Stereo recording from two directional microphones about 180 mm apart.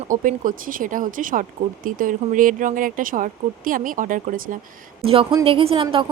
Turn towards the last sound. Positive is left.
turn(degrees=-30)  # may be behind; listen again after turning